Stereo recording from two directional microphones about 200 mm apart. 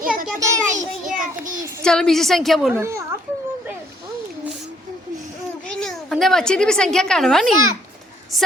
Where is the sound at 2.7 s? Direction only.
15° right (ahead or behind).